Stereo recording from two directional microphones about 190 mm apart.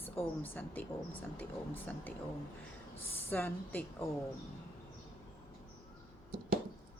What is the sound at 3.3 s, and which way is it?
Speech, 10° left (ahead or behind).